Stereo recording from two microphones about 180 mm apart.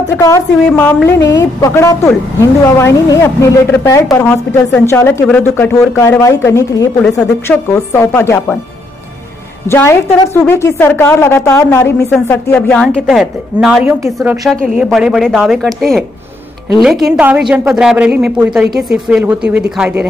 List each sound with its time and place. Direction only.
0.2 s speech: 15° left (ahead or behind)
7.0 s speech: 5° left (ahead or behind)
9.7 s a woman's voice: 15° left (ahead or behind); by 20.1 s 10° right (ahead or behind)